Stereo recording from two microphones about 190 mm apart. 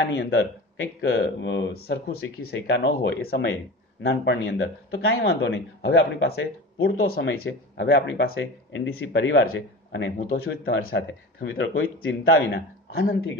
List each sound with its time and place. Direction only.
0.0 s speech: 65° left (ahead or behind)
4.0 s speech: 65° left (ahead or behind)
8.4 s speech: 80° left; by 11.4 s 50° left (ahead or behind)
11.5 s speech: 65° left (ahead or behind)